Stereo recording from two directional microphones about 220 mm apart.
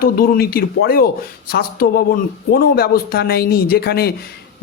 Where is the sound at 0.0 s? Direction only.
45° left (ahead or behind).